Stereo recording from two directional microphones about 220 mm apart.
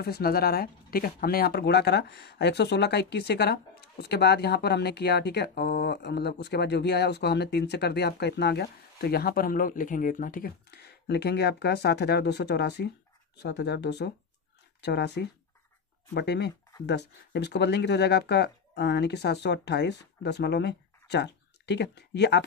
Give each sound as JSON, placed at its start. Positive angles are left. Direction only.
{"t": 0.0, "sound": "speech", "side_deg": 45}